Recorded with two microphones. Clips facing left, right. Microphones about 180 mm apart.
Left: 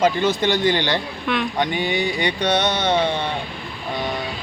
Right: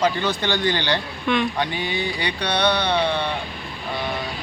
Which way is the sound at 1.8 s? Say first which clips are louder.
Left 4 dB; 20° left (ahead or behind).